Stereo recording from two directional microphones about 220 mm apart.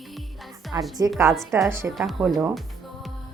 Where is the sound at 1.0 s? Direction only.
15° right (ahead or behind).